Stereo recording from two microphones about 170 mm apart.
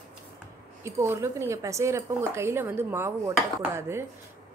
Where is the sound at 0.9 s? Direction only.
15° right (ahead or behind).